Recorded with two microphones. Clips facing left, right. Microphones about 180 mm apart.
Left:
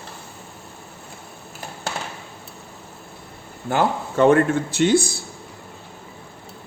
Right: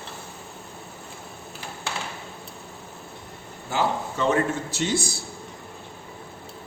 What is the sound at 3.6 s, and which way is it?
Speech, 55° left (ahead or behind).